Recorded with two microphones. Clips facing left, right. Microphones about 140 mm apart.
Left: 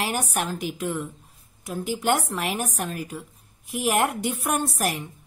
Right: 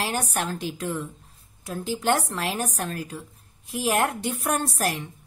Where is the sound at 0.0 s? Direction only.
10° left (ahead or behind).